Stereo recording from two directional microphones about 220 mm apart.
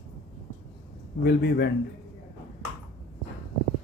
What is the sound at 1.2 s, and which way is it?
Speech, 50° left (ahead or behind).